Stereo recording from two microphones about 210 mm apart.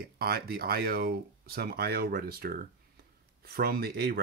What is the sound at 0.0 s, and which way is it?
Speech, 45° right (ahead or behind).